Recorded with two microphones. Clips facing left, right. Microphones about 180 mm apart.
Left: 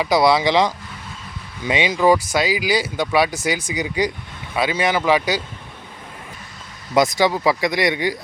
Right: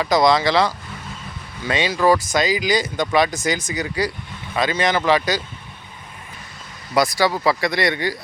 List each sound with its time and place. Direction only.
0.0 s speech: 10° left (ahead or behind)
6.9 s speech: 20° left (ahead or behind)